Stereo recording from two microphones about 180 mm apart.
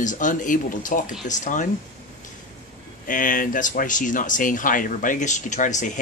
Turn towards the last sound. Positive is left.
turn(degrees=45)  # may be behind; listen again after turning